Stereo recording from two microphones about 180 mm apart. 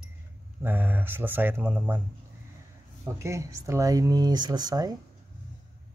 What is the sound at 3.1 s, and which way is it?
Speech, 15° right (ahead or behind).